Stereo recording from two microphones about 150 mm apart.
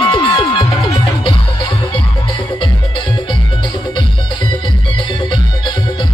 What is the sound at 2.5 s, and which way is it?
Music, 35° left (ahead or behind).